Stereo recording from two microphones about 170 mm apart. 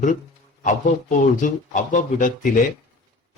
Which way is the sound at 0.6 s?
50° left (ahead or behind).